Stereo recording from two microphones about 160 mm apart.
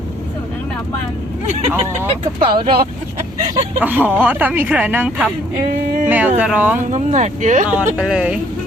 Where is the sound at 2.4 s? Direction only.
30° right (ahead or behind).